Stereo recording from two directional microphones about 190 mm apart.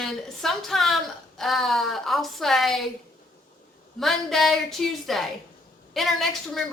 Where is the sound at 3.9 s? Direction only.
Centre (ahead or behind).